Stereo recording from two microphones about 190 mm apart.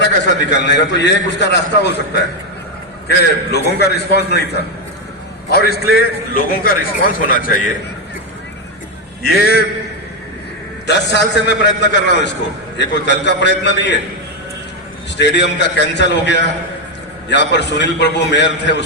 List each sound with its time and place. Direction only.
0.0 s a man's voice: 65° left (ahead or behind)
3.1 s a man's voice: 60° left (ahead or behind)
9.2 s a man's voice: 55° left (ahead or behind)
10.8 s a man's voice: 65° left (ahead or behind)
15.2 s a man's voice: 65° left (ahead or behind)